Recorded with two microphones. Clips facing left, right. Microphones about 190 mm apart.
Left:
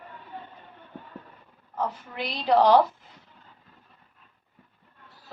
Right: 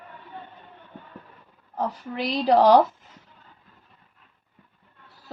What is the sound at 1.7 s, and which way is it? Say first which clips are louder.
A woman's voice: right 2 dB; 40° right (ahead or behind).